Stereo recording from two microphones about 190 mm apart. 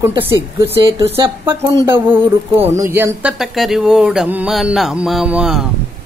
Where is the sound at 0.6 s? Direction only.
25° right (ahead or behind).